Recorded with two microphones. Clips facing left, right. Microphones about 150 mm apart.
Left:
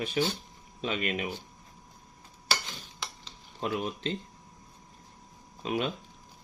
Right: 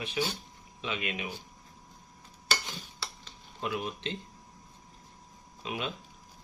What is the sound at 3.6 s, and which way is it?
Speech, 40° left (ahead or behind).